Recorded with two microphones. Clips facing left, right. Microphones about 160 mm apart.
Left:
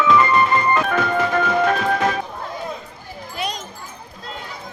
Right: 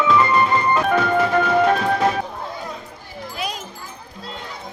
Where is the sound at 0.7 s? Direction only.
10° right (ahead or behind).